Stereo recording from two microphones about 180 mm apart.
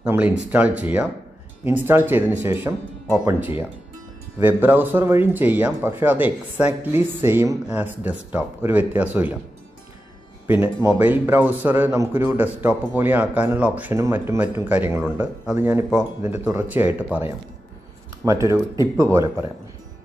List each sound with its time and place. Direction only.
0.0 s speech: 10° right (ahead or behind)
10.4 s speech: 15° right (ahead or behind)